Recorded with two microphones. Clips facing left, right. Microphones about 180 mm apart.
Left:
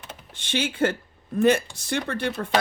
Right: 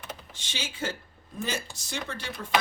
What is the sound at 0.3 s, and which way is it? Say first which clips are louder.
Speech: left 13 dB; 60° left (ahead or behind).